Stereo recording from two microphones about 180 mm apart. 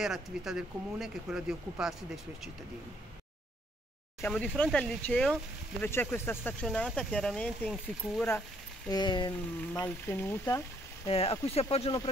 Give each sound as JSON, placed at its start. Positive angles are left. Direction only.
{"t": 0.0, "sound": "speech", "side_deg": 0}
{"t": 4.3, "sound": "speech", "side_deg": 5}
{"t": 8.9, "sound": "speech", "side_deg": 25}
{"t": 9.8, "sound": "speech", "side_deg": 10}
{"t": 11.1, "sound": "speech", "side_deg": 35}